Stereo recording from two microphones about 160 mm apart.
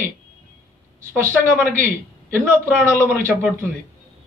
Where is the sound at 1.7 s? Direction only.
15° right (ahead or behind).